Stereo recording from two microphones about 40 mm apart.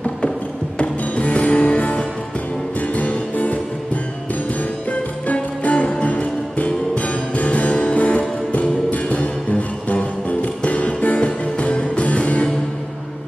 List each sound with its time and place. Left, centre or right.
0.7 s music: left
5.3 s music: left